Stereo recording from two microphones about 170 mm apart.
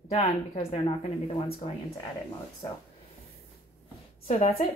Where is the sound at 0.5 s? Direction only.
40° left (ahead or behind).